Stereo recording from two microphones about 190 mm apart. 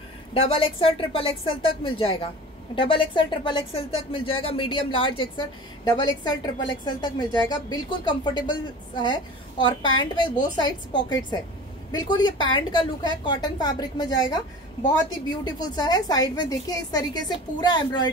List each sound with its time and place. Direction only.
0.3 s a woman's voice: 30° left (ahead or behind)
15.4 s a woman's voice: 20° left (ahead or behind)